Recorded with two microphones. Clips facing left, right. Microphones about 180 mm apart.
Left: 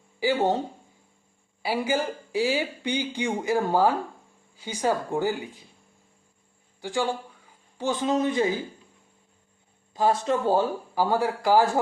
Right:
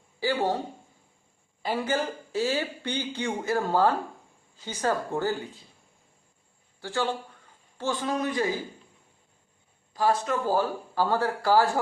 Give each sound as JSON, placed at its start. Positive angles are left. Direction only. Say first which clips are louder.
{"t": 0.2, "sound": "a man's voice", "louder": "left 3 dB", "side_deg": 20}
{"t": 1.6, "sound": "speech", "louder": "left 2 dB", "side_deg": 10}
{"t": 6.8, "sound": "a man's voice", "louder": "left 2 dB", "side_deg": 15}
{"t": 9.9, "sound": "a man's voice", "louder": "left 2 dB", "side_deg": 20}
{"t": 10.9, "sound": "speech", "louder": "left 1 dB", "side_deg": 15}